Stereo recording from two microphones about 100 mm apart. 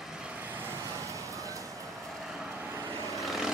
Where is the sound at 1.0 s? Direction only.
30° right (ahead or behind).